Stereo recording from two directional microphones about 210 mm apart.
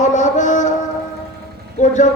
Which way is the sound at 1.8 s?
35° left (ahead or behind).